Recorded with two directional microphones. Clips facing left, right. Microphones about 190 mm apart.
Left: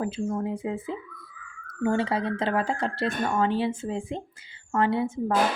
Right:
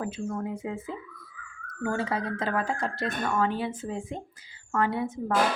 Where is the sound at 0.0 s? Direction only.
25° left (ahead or behind).